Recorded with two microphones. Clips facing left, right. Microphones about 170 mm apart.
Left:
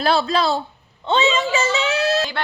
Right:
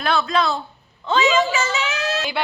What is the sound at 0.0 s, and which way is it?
Speech, 30° left (ahead or behind).